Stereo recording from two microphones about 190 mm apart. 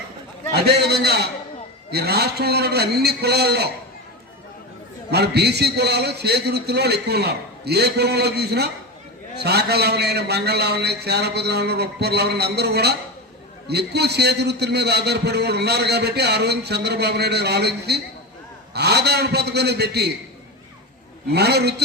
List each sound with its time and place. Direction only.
0.5 s a man's voice: 60° right (ahead or behind)
5.1 s a man's voice: 60° right (ahead or behind)
21.3 s a man's voice: 60° right (ahead or behind)